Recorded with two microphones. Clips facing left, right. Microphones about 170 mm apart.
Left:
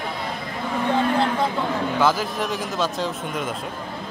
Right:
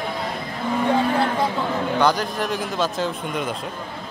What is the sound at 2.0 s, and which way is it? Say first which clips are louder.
Speech: even; 5° left (ahead or behind).